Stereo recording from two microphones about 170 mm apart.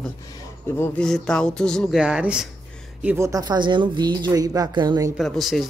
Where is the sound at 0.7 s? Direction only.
15° left (ahead or behind); by 5.1 s 25° right (ahead or behind).